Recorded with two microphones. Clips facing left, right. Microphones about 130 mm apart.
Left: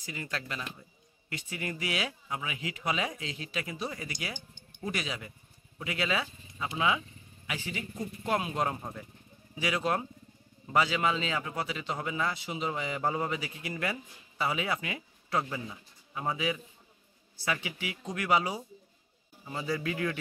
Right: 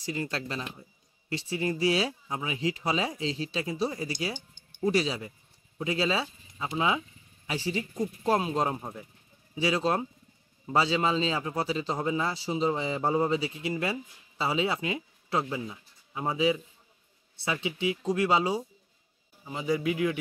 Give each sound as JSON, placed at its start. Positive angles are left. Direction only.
{"t": 0.0, "sound": "a man's voice", "side_deg": -30}
{"t": 9.6, "sound": "a man's voice", "side_deg": -30}